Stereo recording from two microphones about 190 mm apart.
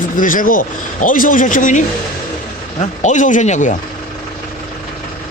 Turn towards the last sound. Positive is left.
turn(degrees=40)  # may be behind; listen again after turning